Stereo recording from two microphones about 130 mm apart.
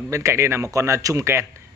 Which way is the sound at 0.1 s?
20° right (ahead or behind).